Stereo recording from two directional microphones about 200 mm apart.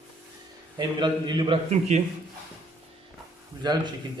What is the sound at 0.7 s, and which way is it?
A man's voice, 20° right (ahead or behind).